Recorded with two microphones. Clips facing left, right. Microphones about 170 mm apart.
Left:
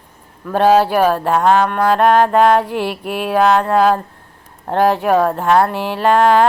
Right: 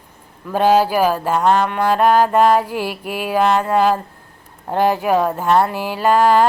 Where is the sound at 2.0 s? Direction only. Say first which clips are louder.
Left 1 dB; 60° left (ahead or behind).